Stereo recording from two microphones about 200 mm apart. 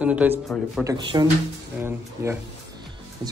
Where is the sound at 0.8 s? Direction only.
20° right (ahead or behind).